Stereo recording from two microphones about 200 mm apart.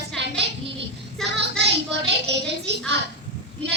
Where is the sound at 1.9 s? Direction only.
60° right (ahead or behind).